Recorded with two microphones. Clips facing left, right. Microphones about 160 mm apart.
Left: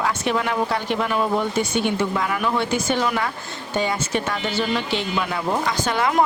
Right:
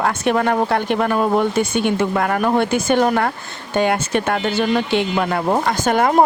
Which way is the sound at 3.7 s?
60° right (ahead or behind).